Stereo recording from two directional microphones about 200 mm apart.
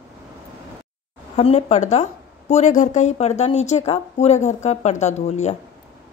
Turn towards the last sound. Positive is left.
turn(degrees=35)  # may be behind; listen again after turning